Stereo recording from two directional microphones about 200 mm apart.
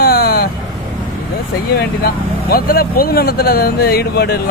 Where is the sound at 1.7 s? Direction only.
50° left (ahead or behind).